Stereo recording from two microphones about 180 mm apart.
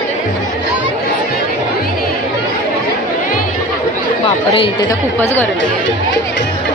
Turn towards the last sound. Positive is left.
turn(degrees=15)  # may be behind; listen again after turning